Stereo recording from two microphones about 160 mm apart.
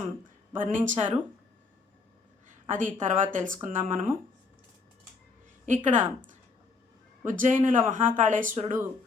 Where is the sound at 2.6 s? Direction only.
55° right (ahead or behind).